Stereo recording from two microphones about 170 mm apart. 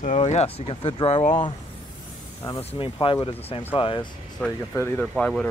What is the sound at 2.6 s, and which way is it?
Speech, 35° left (ahead or behind).